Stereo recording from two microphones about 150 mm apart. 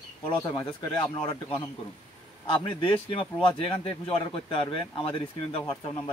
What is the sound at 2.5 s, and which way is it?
Speech, 35° left (ahead or behind).